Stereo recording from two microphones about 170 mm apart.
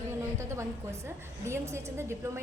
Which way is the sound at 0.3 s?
15° right (ahead or behind).